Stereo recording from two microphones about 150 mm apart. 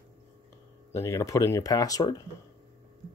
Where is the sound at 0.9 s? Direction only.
20° left (ahead or behind).